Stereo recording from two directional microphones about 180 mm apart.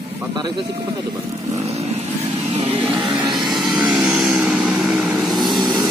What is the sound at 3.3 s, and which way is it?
Vehicle, centre (ahead or behind).